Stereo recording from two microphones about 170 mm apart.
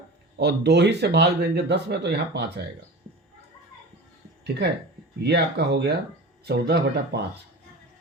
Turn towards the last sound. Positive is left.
turn(degrees=-75)  # may be behind; listen again after turning